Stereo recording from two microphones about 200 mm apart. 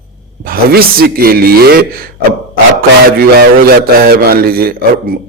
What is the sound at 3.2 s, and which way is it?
A man's voice, 50° right (ahead or behind).